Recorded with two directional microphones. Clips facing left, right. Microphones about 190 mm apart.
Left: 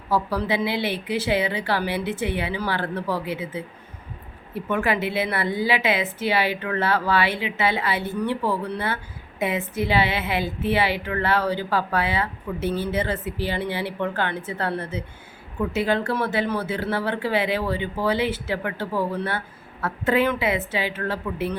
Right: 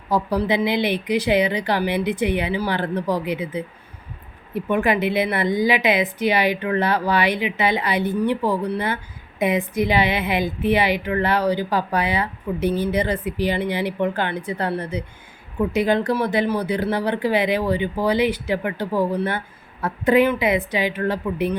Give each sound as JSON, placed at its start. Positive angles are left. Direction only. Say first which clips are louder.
{"t": 0.1, "sound": "a woman's voice", "louder": "right 3 dB", "side_deg": -20}